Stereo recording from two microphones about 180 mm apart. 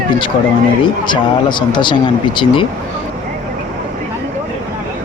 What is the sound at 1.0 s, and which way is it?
Speech, 25° left (ahead or behind).